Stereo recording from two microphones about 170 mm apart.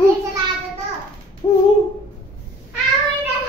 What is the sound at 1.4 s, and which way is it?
Speech, 25° left (ahead or behind).